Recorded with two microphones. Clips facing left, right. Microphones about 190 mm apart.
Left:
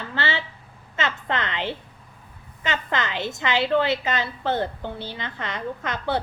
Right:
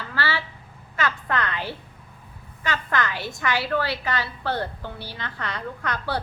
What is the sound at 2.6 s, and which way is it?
A woman's voice, 20° left (ahead or behind).